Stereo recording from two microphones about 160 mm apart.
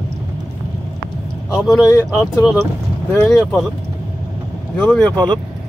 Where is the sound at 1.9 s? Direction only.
20° left (ahead or behind).